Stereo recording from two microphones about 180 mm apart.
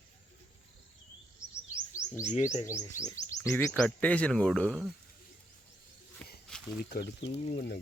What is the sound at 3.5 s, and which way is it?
Speech, 5° left (ahead or behind).